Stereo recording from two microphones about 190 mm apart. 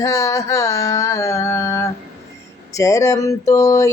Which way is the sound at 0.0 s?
15° left (ahead or behind).